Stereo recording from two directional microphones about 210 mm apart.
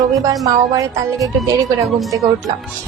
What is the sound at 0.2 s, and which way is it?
Speech, 15° right (ahead or behind).